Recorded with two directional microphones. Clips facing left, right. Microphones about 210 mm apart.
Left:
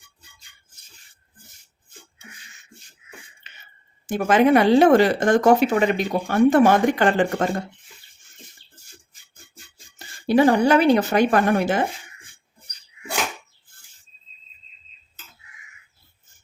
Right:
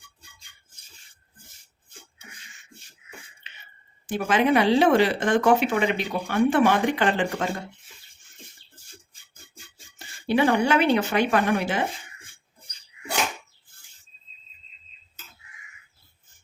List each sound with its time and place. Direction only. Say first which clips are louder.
4.0 s speech: left 5 dB; 45° left (ahead or behind)
10.2 s speech: left 5 dB; 40° left (ahead or behind)